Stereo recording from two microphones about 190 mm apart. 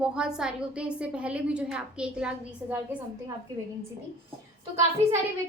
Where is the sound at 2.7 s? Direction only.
15° right (ahead or behind).